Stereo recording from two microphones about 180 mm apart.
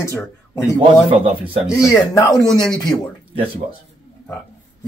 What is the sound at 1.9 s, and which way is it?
A man's voice, 15° left (ahead or behind).